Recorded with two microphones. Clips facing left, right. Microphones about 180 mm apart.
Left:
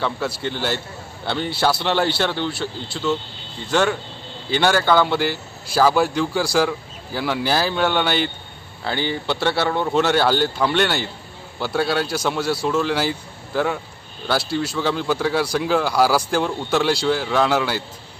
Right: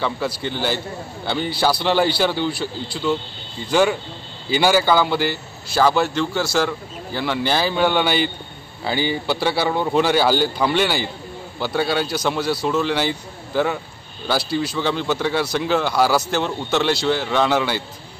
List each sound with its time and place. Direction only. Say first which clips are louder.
0.4 s speech: right 1 dB; centre (ahead or behind)